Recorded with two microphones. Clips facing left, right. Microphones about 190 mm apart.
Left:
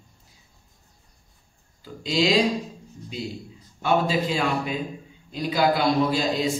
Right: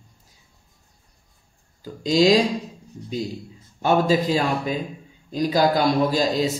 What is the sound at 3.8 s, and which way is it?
A man's voice, 40° right (ahead or behind).